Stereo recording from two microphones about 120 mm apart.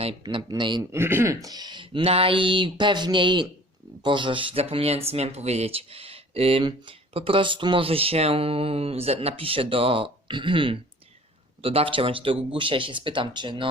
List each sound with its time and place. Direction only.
0.0 s speech: 50° right (ahead or behind)
0.8 s speech: 20° right (ahead or behind); by 13.7 s 40° right (ahead or behind)